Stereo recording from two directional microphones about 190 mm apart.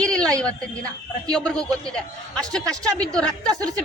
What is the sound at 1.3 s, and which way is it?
Speech, 5° left (ahead or behind).